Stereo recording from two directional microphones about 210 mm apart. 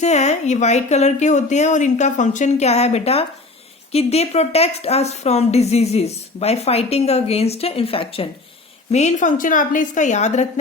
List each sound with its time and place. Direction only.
0.0 s speech: 30° left (ahead or behind)